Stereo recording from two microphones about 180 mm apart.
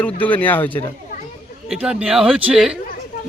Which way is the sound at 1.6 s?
5° right (ahead or behind).